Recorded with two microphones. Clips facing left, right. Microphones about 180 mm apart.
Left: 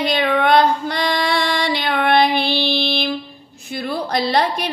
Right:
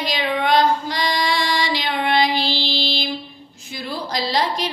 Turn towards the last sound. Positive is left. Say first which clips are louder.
# left 3 dB
turn(degrees=60)  # may be behind; listen again after turning